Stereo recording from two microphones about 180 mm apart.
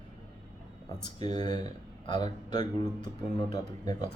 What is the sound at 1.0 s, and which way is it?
Speech, 25° left (ahead or behind).